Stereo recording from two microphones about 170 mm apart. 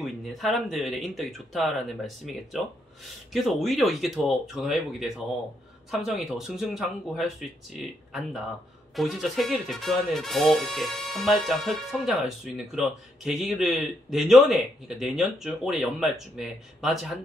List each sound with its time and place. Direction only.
0.0 s speech: centre (ahead or behind)
6.2 s speech: centre (ahead or behind)